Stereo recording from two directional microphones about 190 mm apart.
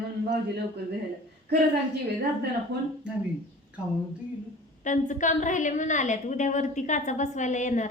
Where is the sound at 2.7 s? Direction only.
60° right (ahead or behind).